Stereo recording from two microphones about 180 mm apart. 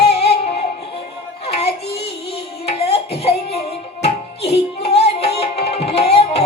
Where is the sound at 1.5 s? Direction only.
35° left (ahead or behind).